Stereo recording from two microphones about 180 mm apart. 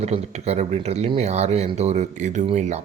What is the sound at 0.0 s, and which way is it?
Speech, 35° right (ahead or behind).